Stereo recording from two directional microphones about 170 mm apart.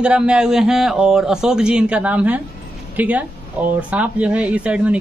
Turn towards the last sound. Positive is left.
turn(degrees=-10)  # may be behind; listen again after turning